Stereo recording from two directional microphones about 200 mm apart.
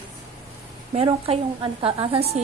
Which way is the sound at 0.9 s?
30° right (ahead or behind).